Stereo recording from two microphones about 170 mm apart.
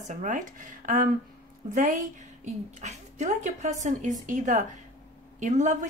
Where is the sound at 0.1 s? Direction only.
50° right (ahead or behind).